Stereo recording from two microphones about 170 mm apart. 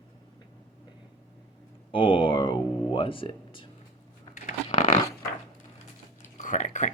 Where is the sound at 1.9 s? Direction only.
30° left (ahead or behind).